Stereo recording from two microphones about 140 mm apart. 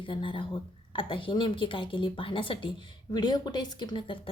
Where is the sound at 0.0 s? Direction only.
35° left (ahead or behind).